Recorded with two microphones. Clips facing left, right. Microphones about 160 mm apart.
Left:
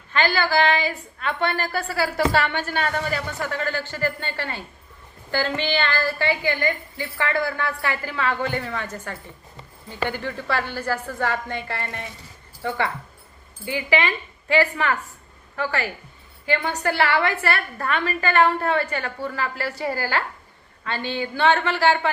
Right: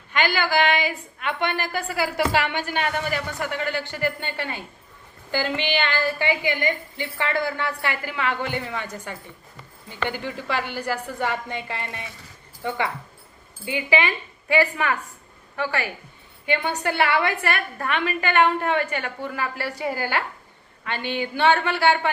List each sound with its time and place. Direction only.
0.1 s a woman's voice: 15° right (ahead or behind)